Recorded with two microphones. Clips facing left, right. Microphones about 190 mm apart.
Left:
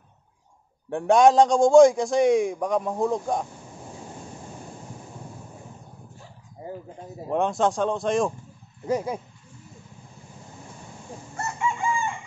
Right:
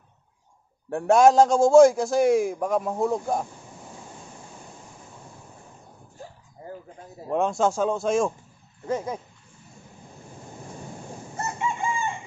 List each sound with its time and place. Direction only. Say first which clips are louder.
0.8 s a man's voice: even; centre (ahead or behind)
7.2 s a man's voice: even; centre (ahead or behind)
8.8 s speech: left 2 dB; 10° left (ahead or behind)
11.3 s chicken: left 1 dB; 20° right (ahead or behind)